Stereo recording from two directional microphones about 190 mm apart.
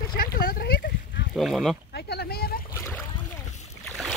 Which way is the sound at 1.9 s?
60° left (ahead or behind).